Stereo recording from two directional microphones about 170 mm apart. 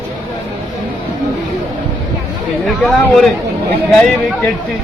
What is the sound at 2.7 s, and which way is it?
Speech, centre (ahead or behind).